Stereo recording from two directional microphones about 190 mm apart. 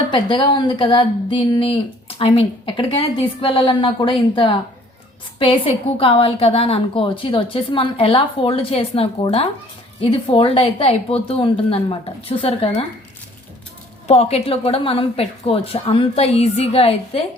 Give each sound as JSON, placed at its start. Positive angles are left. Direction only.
{"t": 0.1, "sound": "speech", "side_deg": 25}
{"t": 14.1, "sound": "a woman's voice", "side_deg": 35}